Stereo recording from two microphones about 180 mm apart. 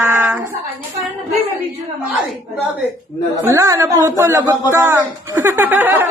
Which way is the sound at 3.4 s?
15° right (ahead or behind).